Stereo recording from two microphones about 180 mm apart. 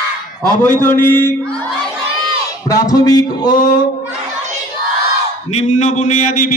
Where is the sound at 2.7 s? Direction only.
20° left (ahead or behind).